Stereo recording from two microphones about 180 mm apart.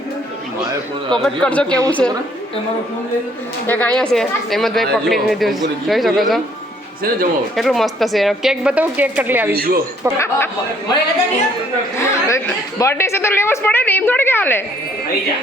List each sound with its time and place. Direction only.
1.1 s a woman's voice: 5° left (ahead or behind)
3.7 s speech: 10° left (ahead or behind)
7.5 s speech: centre (ahead or behind)
9.6 s speech: 55° right (ahead or behind)
11.9 s a woman's voice: 15° left (ahead or behind)